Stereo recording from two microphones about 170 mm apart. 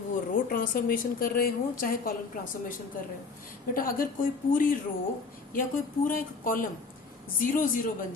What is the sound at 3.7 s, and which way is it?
A woman's voice, 55° left (ahead or behind).